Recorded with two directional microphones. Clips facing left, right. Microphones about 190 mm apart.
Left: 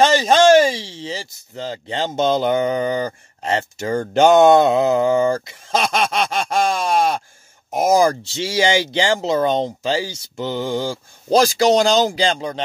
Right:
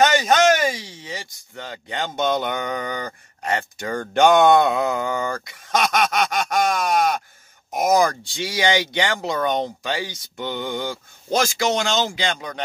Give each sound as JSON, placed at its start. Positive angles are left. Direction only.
{"t": 0.0, "sound": "speech", "side_deg": 30}